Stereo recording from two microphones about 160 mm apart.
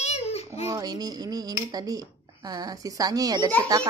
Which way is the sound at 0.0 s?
40° left (ahead or behind).